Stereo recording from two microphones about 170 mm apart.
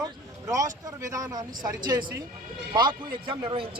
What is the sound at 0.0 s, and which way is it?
Vehicle, 20° right (ahead or behind).